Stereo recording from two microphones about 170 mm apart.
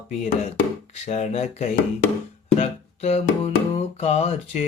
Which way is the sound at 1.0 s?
40° left (ahead or behind).